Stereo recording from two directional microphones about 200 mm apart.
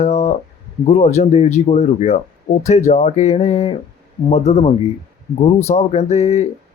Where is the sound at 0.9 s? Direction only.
35° left (ahead or behind).